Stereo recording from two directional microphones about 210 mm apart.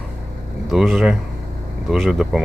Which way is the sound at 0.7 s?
Centre (ahead or behind).